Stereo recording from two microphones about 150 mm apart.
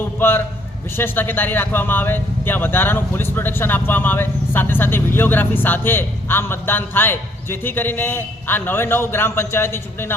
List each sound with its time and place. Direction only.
0.2 s a man's voice: 15° left (ahead or behind)